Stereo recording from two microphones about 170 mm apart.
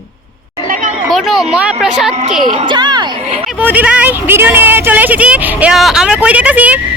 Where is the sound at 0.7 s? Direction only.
50° right (ahead or behind).